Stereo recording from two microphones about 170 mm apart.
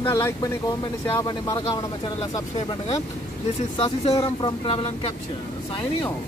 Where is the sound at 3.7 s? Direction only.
35° left (ahead or behind).